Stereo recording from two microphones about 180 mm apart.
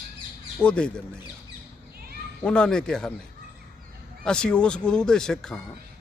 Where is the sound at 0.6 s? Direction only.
5° left (ahead or behind).